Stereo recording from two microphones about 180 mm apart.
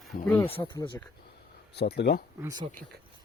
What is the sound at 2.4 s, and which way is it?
Speech, 20° right (ahead or behind).